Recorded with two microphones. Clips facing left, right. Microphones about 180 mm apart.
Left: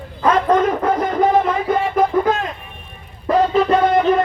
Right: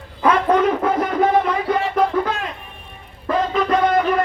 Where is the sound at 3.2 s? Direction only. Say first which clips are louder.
Left 4 dB; 25° left (ahead or behind).